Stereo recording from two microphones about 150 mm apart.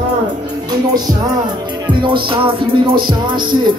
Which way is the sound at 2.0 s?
35° right (ahead or behind).